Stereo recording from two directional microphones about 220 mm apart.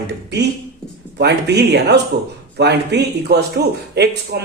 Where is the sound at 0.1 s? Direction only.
50° right (ahead or behind).